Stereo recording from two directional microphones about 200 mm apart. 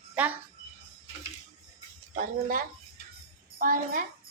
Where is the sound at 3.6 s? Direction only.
45° right (ahead or behind).